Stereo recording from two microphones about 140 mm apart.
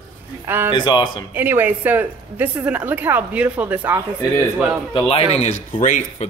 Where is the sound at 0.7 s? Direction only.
35° left (ahead or behind).